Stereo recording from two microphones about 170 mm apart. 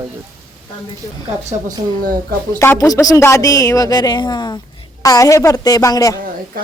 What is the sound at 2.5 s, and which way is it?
A woman's voice, 15° left (ahead or behind).